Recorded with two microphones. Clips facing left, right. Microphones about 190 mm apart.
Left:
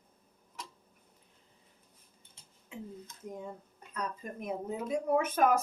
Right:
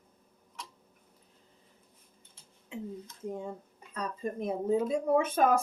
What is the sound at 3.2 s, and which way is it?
Speech, 30° right (ahead or behind).